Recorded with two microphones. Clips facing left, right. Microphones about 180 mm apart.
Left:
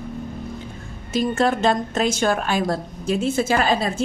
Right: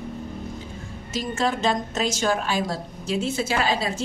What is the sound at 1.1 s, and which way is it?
A woman's voice, 55° left (ahead or behind).